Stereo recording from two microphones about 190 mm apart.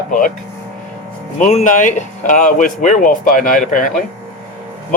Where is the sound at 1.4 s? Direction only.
40° left (ahead or behind).